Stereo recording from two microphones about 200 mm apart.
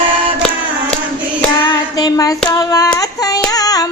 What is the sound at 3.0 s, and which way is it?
Carnatic music, 15° left (ahead or behind).